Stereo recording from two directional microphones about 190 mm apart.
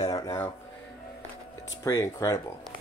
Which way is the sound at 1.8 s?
15° left (ahead or behind).